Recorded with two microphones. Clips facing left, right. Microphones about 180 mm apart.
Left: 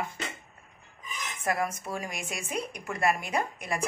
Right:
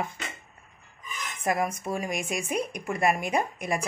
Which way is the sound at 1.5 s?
20° right (ahead or behind).